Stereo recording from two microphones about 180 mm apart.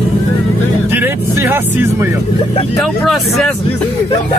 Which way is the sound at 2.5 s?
30° left (ahead or behind).